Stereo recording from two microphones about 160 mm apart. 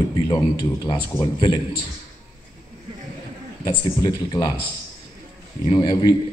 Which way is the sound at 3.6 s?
25° left (ahead or behind).